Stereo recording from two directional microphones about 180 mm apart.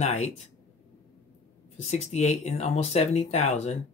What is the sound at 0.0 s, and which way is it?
Speech, 40° left (ahead or behind).